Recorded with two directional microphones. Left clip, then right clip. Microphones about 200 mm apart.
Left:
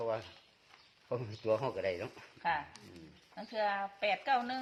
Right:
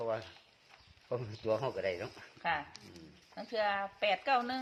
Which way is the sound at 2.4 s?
35° right (ahead or behind).